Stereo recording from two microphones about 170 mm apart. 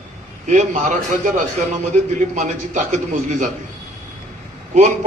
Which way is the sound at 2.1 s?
45° right (ahead or behind).